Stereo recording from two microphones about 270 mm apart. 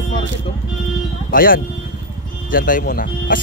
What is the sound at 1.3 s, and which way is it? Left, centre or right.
Speech, left.